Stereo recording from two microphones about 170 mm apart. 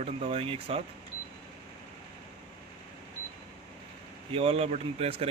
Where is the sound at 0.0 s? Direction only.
35° right (ahead or behind).